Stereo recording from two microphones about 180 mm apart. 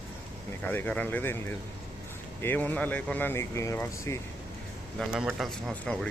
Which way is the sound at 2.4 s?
10° left (ahead or behind).